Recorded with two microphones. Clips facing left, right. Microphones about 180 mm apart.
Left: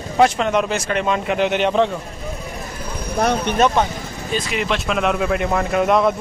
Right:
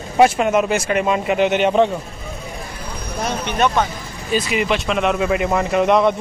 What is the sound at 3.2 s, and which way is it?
Speech, 60° left (ahead or behind).